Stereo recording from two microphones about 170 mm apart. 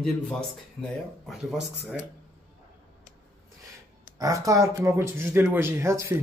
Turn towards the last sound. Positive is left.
turn(degrees=-15)  # may be behind; listen again after turning